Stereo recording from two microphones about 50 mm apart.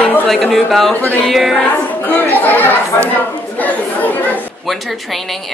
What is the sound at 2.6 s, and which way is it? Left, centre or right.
Speech, left.